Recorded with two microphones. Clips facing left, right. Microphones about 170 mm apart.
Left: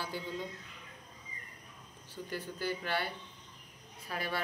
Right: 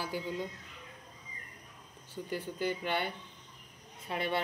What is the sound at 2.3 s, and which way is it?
A woman's voice, 20° right (ahead or behind).